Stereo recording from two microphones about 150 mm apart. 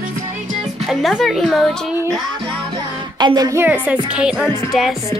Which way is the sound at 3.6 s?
10° right (ahead or behind).